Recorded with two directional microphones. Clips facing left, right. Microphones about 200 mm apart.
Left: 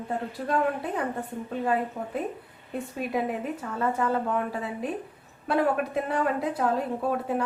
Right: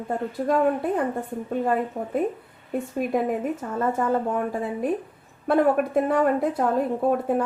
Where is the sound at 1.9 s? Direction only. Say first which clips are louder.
Right 6 dB; 45° right (ahead or behind).